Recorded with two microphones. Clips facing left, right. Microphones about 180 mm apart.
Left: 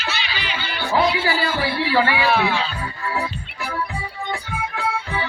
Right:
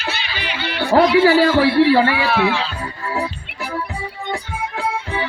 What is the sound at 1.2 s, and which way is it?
Speech, 80° right.